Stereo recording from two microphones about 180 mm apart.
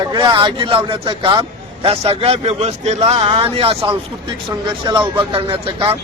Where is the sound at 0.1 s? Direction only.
25° right (ahead or behind).